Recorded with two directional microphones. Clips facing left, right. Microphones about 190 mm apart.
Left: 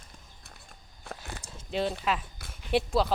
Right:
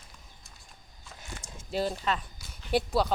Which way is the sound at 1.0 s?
60° left (ahead or behind).